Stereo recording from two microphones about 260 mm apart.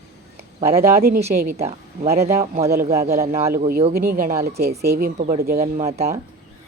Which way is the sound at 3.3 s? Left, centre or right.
Right.